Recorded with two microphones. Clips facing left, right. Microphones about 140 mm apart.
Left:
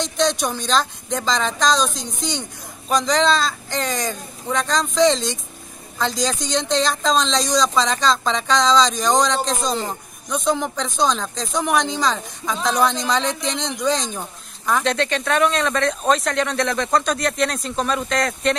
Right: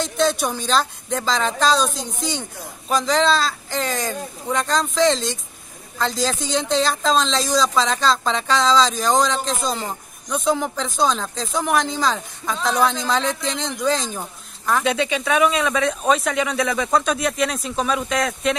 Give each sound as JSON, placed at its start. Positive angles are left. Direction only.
{"t": 0.0, "sound": "speech", "side_deg": -5}